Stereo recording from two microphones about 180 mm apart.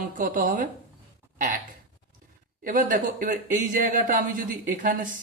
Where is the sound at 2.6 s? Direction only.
50° right (ahead or behind).